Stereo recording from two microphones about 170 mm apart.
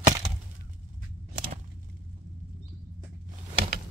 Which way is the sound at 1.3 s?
55° right (ahead or behind).